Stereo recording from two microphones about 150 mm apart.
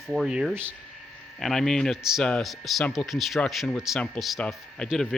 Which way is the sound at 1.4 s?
Centre (ahead or behind).